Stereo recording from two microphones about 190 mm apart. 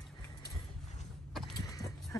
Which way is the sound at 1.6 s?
20° left (ahead or behind).